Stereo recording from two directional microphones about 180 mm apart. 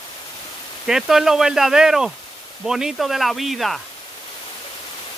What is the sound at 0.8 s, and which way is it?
Speech, centre (ahead or behind).